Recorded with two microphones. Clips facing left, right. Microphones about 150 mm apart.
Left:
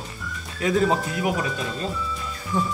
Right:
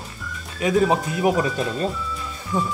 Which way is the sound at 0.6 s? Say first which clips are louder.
Right 2 dB; 20° right (ahead or behind).